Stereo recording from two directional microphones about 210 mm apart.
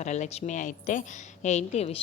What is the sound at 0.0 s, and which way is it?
A woman's voice, 35° left (ahead or behind).